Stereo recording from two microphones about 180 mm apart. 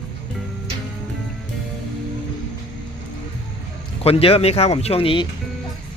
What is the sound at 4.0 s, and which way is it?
Speech, 35° left (ahead or behind).